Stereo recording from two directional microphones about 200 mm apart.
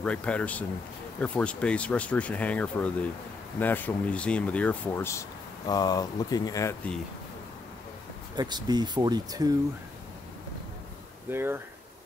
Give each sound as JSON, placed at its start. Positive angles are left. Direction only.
{"t": 0.0, "sound": "speech", "side_deg": 5}
{"t": 8.4, "sound": "speech", "side_deg": -20}
{"t": 11.2, "sound": "speech", "side_deg": -10}